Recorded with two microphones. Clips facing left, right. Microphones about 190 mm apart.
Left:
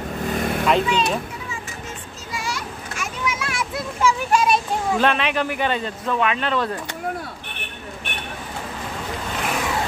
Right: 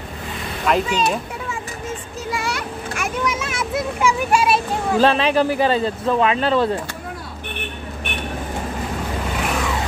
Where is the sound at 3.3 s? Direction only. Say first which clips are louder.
Right 4 dB; 20° right (ahead or behind).